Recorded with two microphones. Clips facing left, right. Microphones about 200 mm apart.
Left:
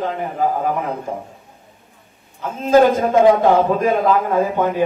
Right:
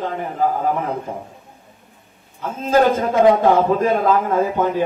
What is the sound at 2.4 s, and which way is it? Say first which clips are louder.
A man's voice: left 3 dB; 15° left (ahead or behind).